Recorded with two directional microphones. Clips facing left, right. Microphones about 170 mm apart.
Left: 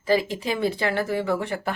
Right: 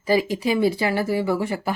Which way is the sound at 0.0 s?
10° right (ahead or behind).